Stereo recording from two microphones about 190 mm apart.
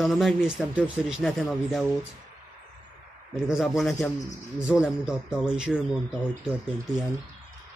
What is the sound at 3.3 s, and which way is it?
Speech, centre (ahead or behind).